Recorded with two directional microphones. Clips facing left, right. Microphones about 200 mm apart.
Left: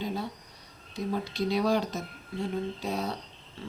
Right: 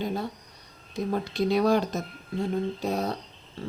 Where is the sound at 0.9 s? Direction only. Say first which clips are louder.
Right 3 dB; 50° right (ahead or behind).